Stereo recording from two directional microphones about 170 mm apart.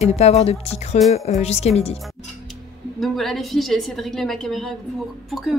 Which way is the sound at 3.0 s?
Centre (ahead or behind).